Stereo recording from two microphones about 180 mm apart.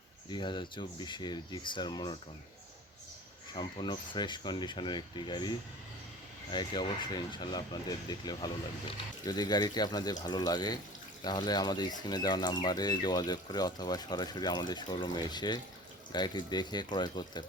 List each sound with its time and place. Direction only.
0.3 s speech: 25° left (ahead or behind)
3.5 s speech: 25° left (ahead or behind)